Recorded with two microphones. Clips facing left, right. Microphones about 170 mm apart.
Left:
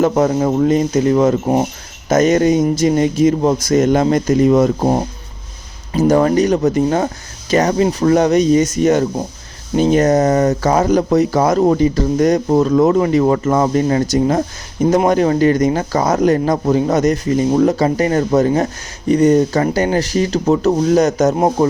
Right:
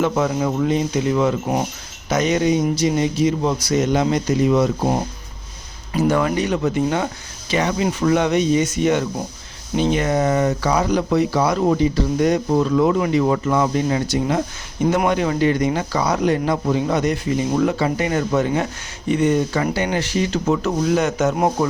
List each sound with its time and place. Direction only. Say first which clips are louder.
0.0 s speech: left 5 dB; 40° left (ahead or behind)
6.0 s speech: left 6 dB; 40° left (ahead or behind)